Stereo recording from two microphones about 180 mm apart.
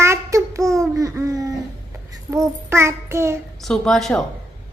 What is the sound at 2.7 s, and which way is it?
Child singing, 15° right (ahead or behind).